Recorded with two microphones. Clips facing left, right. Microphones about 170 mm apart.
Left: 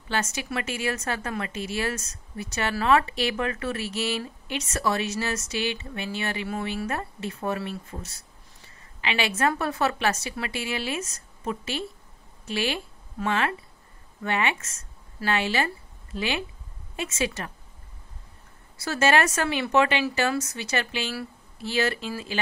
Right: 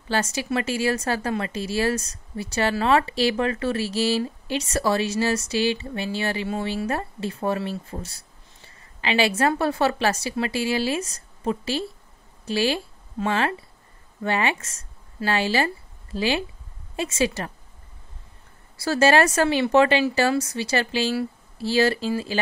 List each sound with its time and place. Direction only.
0.1 s a woman's voice: 35° right (ahead or behind)
18.8 s a woman's voice: 35° right (ahead or behind)